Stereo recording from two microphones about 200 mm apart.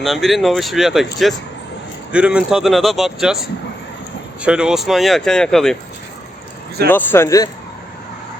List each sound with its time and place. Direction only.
0.0 s speech: centre (ahead or behind)
4.4 s speech: 5° right (ahead or behind)
6.8 s speech: 10° left (ahead or behind)